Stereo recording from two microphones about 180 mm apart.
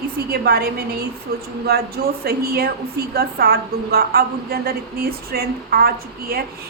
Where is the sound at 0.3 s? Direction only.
60° right (ahead or behind).